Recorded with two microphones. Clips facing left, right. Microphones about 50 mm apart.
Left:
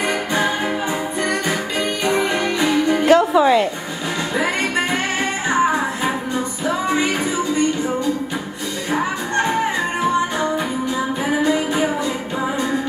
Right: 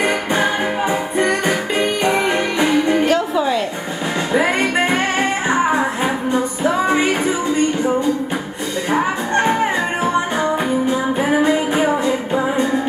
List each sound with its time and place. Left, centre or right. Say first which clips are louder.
2.1 s music: right 2 dB; right
3.1 s music: left 4 dB; centre
4.3 s music: right 4 dB; centre
6.6 s music: right 3 dB; right
8.9 s music: right 3 dB; right
11.2 s music: right 2 dB; right